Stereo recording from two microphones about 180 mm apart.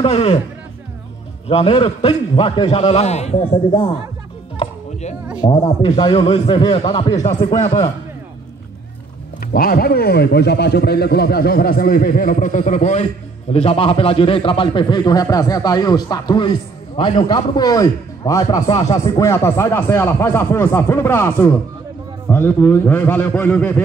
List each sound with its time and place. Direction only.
0.0 s a man's voice: 30° left (ahead or behind)
1.5 s a man's voice: 30° left (ahead or behind)
5.5 s a man's voice: 30° left (ahead or behind)
7.4 s a man's voice: 40° left (ahead or behind)
9.4 s a man's voice: 55° left (ahead or behind); by 23.8 s 10° left (ahead or behind)